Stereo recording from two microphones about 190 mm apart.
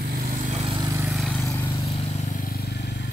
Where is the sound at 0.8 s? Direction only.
15° right (ahead or behind).